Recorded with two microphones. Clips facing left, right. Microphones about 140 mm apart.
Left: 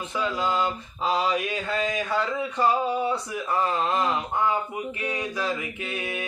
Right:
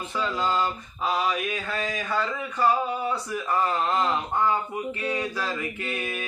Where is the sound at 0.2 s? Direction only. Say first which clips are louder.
Even; 15° left (ahead or behind).